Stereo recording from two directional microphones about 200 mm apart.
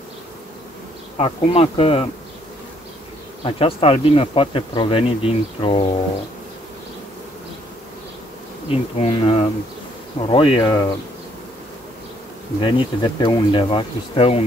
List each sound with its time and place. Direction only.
1.1 s insect: 30° left (ahead or behind)
3.4 s insect: 30° left (ahead or behind)
8.6 s speech: 30° left (ahead or behind)
10.2 s insect: 25° left (ahead or behind)
12.6 s insect: 25° left (ahead or behind)